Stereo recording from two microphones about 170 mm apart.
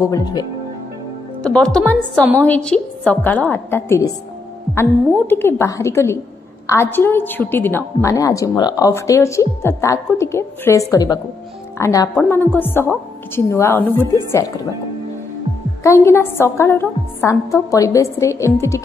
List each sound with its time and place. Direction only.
0.0 s speech: 20° left (ahead or behind)
1.4 s a woman's voice: 5° left (ahead or behind)
15.8 s a woman's voice: 15° left (ahead or behind)